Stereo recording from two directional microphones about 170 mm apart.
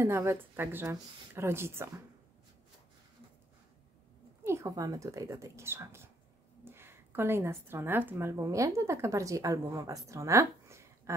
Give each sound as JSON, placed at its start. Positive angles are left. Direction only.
{"t": 0.0, "sound": "speech", "side_deg": -15}
{"t": 4.5, "sound": "speech", "side_deg": -20}